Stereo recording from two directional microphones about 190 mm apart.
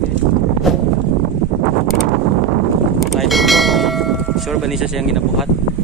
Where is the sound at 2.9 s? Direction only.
Centre (ahead or behind).